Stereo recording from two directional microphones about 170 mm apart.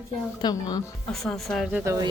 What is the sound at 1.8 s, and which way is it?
Speech, 15° right (ahead or behind).